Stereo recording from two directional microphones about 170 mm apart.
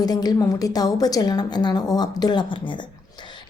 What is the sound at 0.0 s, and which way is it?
A woman's voice, 25° left (ahead or behind).